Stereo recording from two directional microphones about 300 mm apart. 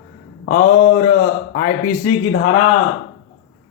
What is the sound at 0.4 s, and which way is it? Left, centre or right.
A man's voice, left.